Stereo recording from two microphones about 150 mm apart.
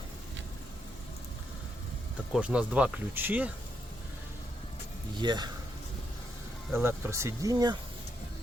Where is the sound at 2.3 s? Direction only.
10° right (ahead or behind).